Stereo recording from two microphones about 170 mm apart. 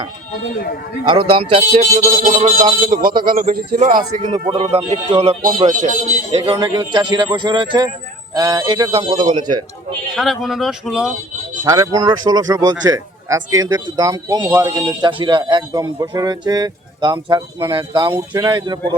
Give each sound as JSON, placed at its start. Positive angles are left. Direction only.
{"t": 1.0, "sound": "a man's voice", "side_deg": -30}
{"t": 1.7, "sound": "a sound", "side_deg": -45}
{"t": 2.9, "sound": "speech", "side_deg": -55}
{"t": 3.8, "sound": "a sound", "side_deg": -50}
{"t": 4.2, "sound": "a man's voice", "side_deg": -30}
{"t": 10.2, "sound": "speech", "side_deg": 0}
{"t": 11.6, "sound": "a man's voice", "side_deg": -20}